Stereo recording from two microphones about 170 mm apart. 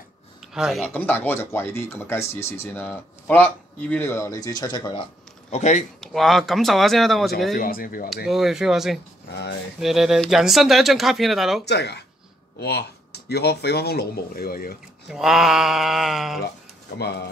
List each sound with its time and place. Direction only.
0.5 s speech: 5° right (ahead or behind)
0.9 s speech: 10° left (ahead or behind)
5.5 s speech: 45° left (ahead or behind)
5.9 s speech: centre (ahead or behind)
7.5 s speech: 55° left (ahead or behind)
8.3 s speech: centre (ahead or behind)
9.3 s speech: 85° left
9.8 s speech: centre (ahead or behind)
11.6 s speech: 75° left (ahead or behind)
15.0 s speech: centre (ahead or behind)